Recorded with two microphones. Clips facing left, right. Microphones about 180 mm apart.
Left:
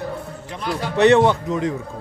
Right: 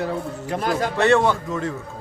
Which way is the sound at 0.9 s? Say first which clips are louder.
Left 5 dB; 20° left (ahead or behind).